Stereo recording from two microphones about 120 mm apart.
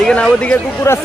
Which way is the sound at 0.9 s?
25° left (ahead or behind).